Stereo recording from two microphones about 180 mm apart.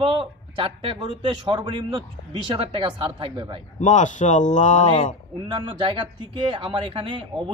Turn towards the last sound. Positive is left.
turn(degrees=-30)  # may be behind; listen again after turning